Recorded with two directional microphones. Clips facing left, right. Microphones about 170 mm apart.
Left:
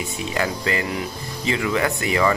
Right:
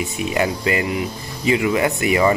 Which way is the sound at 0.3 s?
15° right (ahead or behind).